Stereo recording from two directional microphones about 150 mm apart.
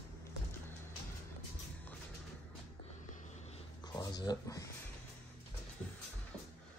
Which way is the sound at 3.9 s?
30° left (ahead or behind).